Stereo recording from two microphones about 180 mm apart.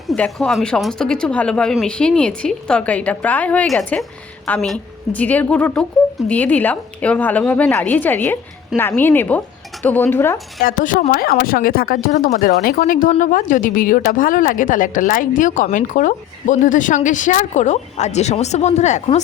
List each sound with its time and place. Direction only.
0.1 s a woman's voice: centre (ahead or behind)
10.6 s speech: 50° left (ahead or behind)